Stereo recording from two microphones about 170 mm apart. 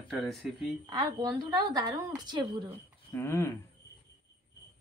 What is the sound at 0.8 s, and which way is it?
A woman's voice, 25° right (ahead or behind).